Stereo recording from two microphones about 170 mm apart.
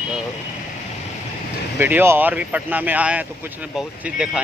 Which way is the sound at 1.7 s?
10° right (ahead or behind).